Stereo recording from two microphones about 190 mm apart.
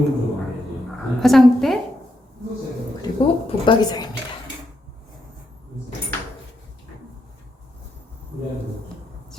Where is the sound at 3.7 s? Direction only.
20° left (ahead or behind).